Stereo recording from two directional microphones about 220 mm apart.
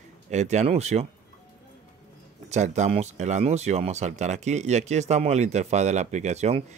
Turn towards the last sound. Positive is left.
turn(degrees=-30)  # may be behind; listen again after turning